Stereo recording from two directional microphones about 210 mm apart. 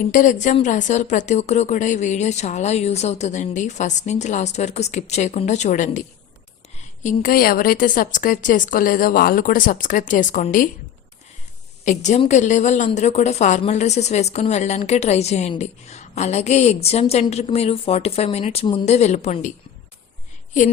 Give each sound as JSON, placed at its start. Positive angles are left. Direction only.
{"t": 0.0, "sound": "a woman's voice", "side_deg": 40}
{"t": 7.0, "sound": "a woman's voice", "side_deg": 35}
{"t": 11.9, "sound": "a woman's voice", "side_deg": 35}